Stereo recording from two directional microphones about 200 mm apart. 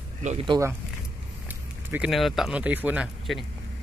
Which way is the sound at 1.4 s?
5° right (ahead or behind).